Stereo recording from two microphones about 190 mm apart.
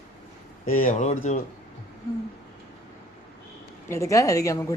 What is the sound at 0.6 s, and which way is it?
Speech, 45° left (ahead or behind).